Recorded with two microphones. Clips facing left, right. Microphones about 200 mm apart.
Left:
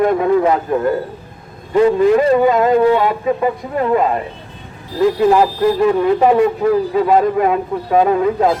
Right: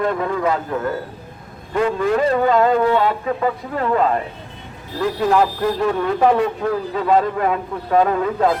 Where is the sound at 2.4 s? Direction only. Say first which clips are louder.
Left 4 dB; 10° left (ahead or behind).